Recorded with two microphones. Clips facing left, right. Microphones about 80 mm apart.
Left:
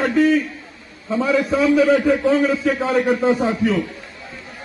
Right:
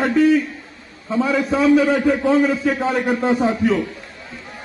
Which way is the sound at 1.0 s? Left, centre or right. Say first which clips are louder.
Even; centre.